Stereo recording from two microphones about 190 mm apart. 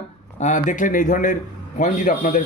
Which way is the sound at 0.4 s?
40° left (ahead or behind).